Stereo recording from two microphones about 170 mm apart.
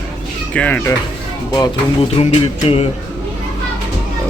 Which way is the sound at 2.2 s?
35° left (ahead or behind).